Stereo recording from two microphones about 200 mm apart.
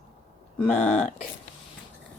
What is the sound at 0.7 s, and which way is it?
Speech, 35° left (ahead or behind).